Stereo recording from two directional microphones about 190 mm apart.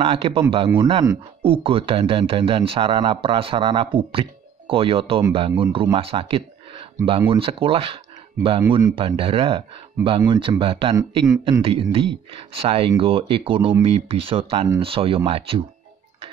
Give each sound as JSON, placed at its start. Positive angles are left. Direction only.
{"t": 0.0, "sound": "speech", "side_deg": -30}